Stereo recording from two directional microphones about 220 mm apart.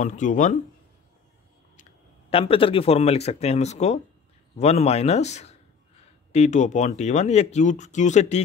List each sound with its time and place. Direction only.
0.0 s speech: 35° left (ahead or behind)
2.3 s speech: 25° left (ahead or behind)